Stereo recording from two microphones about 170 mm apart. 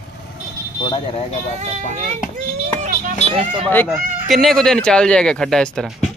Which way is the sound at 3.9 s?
Centre (ahead or behind).